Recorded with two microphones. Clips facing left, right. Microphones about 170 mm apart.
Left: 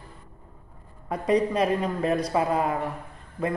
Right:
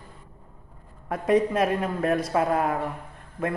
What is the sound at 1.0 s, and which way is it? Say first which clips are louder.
A man's voice: right 1 dB; centre (ahead or behind).